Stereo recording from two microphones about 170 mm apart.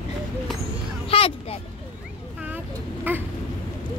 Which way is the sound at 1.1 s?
35° left (ahead or behind).